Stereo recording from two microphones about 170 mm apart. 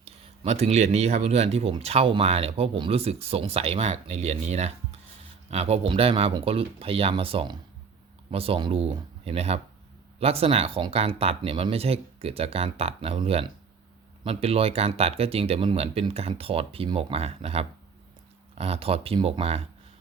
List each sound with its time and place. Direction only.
0.0 s speech: 40° right (ahead or behind)